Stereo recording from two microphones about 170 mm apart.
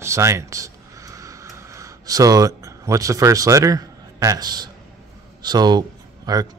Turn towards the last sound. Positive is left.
turn(degrees=-20)  # may be behind; listen again after turning